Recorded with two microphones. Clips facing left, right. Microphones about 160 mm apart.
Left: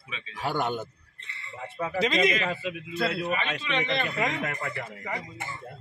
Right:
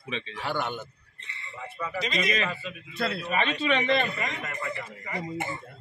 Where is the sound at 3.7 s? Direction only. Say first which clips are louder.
Right 4 dB; 50° right (ahead or behind).